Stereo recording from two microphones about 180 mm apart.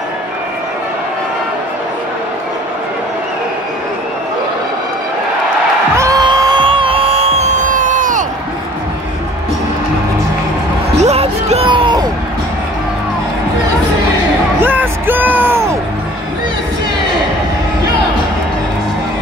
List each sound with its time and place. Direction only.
5.9 s music: 20° right (ahead or behind); by 8.3 s 45° right (ahead or behind)
11.0 s music: 35° right (ahead or behind)
14.6 s music: 10° right (ahead or behind)